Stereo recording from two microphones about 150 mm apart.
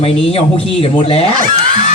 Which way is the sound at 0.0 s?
40° left (ahead or behind).